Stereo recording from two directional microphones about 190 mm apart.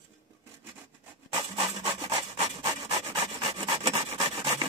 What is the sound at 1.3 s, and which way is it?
Rub, 25° right (ahead or behind).